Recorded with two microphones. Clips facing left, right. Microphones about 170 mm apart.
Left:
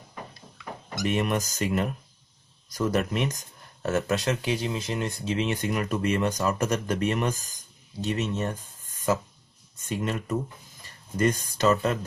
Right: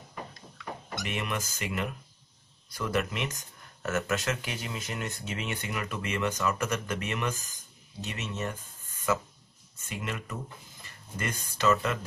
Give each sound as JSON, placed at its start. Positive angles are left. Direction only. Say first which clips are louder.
{"t": 1.0, "sound": "speech", "louder": "left 9 dB", "side_deg": 40}